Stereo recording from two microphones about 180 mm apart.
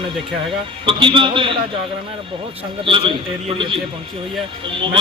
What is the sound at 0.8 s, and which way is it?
Speech, 30° right (ahead or behind).